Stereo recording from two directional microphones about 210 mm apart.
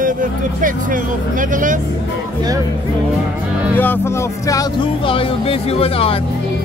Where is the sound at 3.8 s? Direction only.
10° left (ahead or behind); by 6.2 s 25° left (ahead or behind).